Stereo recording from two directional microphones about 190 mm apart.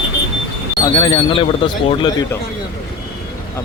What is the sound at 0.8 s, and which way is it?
Speech, 25° left (ahead or behind).